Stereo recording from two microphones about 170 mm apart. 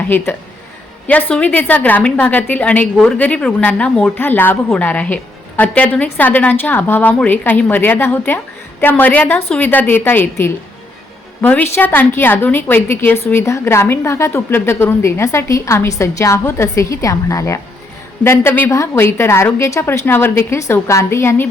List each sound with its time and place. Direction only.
1.0 s a woman's voice: 10° left (ahead or behind)